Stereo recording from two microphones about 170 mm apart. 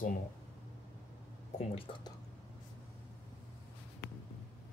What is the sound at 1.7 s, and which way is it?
Speech, 30° left (ahead or behind).